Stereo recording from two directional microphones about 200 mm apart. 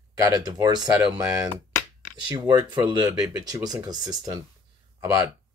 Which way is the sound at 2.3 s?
20° right (ahead or behind).